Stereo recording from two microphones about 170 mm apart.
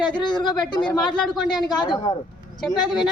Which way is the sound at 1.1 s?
Centre (ahead or behind).